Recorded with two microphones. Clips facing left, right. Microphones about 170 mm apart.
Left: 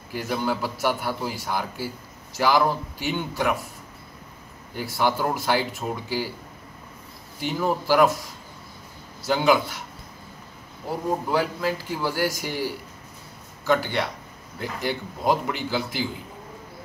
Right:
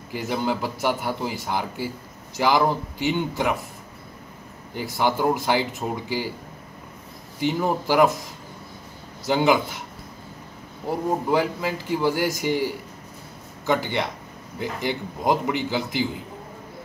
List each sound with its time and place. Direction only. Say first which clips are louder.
0.1 s a man's voice: right 1 dB; 15° right (ahead or behind)
4.7 s a man's voice: right 1 dB; 15° right (ahead or behind)
7.3 s a man's voice: right 2 dB; 15° right (ahead or behind)
9.2 s a man's voice: right 1 dB; 20° right (ahead or behind)
11.3 s a man's voice: right 1 dB; 20° right (ahead or behind)
13.7 s a man's voice: even; 20° right (ahead or behind)